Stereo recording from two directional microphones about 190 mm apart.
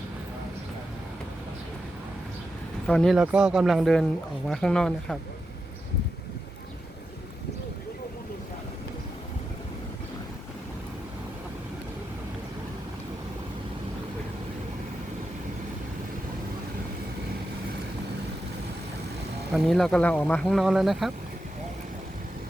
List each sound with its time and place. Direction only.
2.8 s speech: 5° left (ahead or behind)
19.5 s speech: centre (ahead or behind)